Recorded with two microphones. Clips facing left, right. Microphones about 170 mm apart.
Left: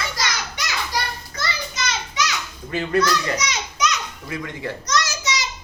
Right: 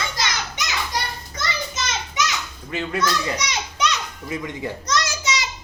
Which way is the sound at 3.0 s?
30° right (ahead or behind).